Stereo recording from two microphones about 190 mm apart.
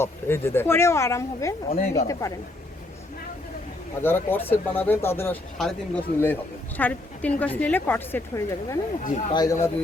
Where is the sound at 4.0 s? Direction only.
10° left (ahead or behind).